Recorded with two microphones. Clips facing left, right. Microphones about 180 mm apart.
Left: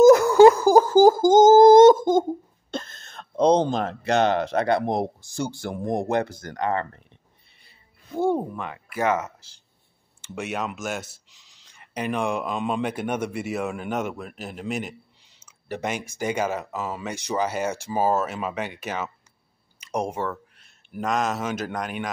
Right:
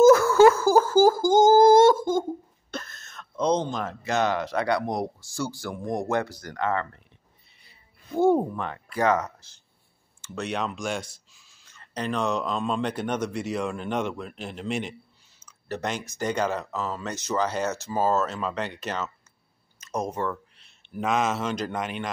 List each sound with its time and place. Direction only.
0.0 s a sound: 15° left (ahead or behind); by 3.9 s 30° left (ahead or behind)
4.0 s speech: 65° left (ahead or behind)
4.5 s speech: 25° left (ahead or behind)
8.2 s speech: 5° right (ahead or behind)
10.3 s speech: 5° left (ahead or behind)
11.1 s speech: 15° left (ahead or behind)
21.0 s speech: centre (ahead or behind)